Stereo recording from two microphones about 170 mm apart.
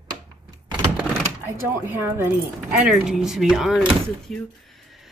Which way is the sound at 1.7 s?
10° right (ahead or behind).